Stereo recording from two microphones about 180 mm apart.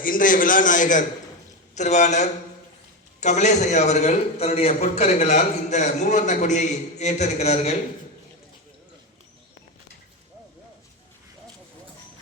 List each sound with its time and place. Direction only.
0.0 s a man's voice: 50° left (ahead or behind)